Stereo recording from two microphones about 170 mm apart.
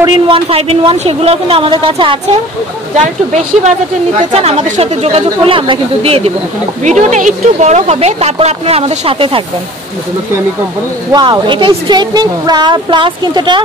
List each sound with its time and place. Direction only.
0.0 s a woman's voice: 30° right (ahead or behind)
4.2 s a woman's voice: 40° right (ahead or behind)
11.1 s a woman's voice: 25° right (ahead or behind)